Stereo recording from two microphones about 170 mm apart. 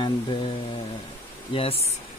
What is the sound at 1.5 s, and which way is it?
Speech, 35° left (ahead or behind).